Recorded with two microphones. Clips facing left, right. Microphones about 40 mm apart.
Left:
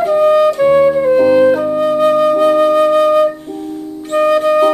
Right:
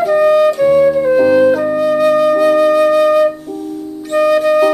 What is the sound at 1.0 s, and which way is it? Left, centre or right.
Music, centre.